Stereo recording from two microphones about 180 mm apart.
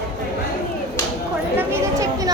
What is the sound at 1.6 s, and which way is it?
Chatter, 20° right (ahead or behind).